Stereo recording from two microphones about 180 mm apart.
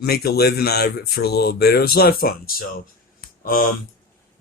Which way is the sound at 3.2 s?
50° left (ahead or behind).